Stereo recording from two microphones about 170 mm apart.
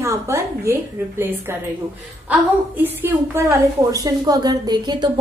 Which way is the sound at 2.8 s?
10° right (ahead or behind).